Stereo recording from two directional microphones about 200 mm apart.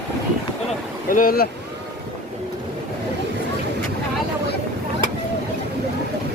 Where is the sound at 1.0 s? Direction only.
45° left (ahead or behind).